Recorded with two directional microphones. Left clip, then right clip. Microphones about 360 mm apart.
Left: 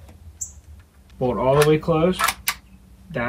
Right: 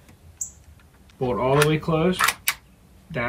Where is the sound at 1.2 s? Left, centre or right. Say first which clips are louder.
Left 3 dB; centre.